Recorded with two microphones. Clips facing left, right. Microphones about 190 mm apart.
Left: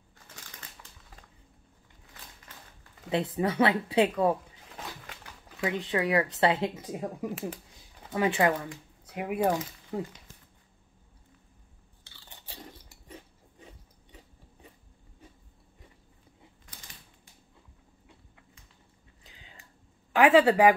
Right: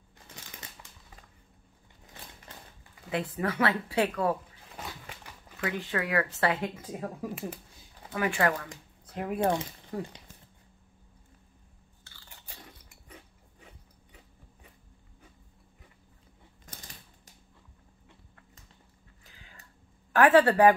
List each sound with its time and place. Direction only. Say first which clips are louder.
3.1 s speech: left 3 dB; 20° left (ahead or behind)
4.7 s a sound: even; 5° right (ahead or behind)
5.6 s speech: left 3 dB; 15° left (ahead or behind)
9.1 s speech: left 1 dB; 10° left (ahead or behind)
19.2 s a sound: left 2 dB; 20° left (ahead or behind)
20.1 s a woman's voice: left 1 dB; 10° left (ahead or behind)